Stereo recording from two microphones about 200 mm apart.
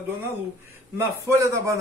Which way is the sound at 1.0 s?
15° right (ahead or behind).